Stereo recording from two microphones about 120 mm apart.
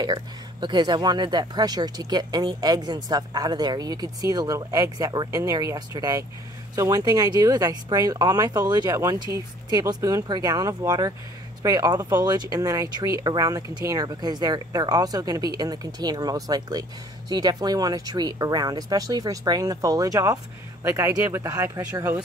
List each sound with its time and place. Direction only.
0.0 s speech: 40° right (ahead or behind); by 22.2 s 25° right (ahead or behind)